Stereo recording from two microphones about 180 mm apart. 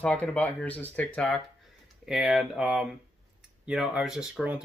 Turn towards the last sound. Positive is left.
turn(degrees=-5)  # may be behind; listen again after turning